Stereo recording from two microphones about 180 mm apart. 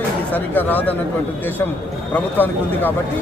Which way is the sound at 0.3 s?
10° left (ahead or behind).